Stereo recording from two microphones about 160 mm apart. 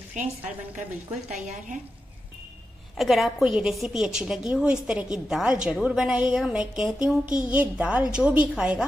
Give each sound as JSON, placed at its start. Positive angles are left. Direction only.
{"t": 0.2, "sound": "a woman's voice", "side_deg": -50}
{"t": 3.0, "sound": "a woman's voice", "side_deg": 0}